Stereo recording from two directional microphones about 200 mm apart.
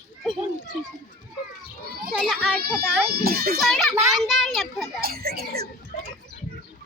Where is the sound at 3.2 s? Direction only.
50° right (ahead or behind).